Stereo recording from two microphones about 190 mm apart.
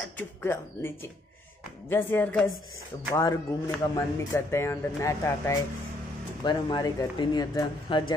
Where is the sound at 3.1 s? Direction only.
15° left (ahead or behind).